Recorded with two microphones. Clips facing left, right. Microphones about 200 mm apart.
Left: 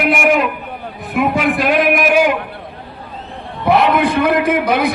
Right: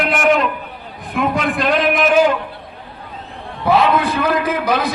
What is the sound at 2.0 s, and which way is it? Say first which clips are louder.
Speech: even; 15° left (ahead or behind).